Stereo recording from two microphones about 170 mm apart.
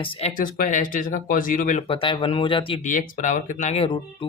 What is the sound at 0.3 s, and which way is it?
Speech, 50° left (ahead or behind).